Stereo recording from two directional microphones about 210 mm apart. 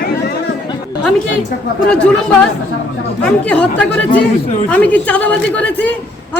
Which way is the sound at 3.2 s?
5° left (ahead or behind).